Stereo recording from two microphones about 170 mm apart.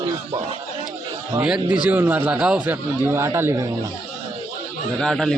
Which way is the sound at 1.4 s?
5° right (ahead or behind).